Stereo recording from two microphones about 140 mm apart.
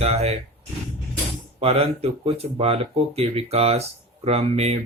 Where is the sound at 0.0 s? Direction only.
50° right (ahead or behind).